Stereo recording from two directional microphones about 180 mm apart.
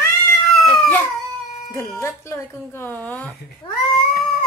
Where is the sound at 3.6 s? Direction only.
30° left (ahead or behind).